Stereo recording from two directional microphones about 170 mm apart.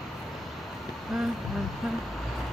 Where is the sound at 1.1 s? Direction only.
Centre (ahead or behind).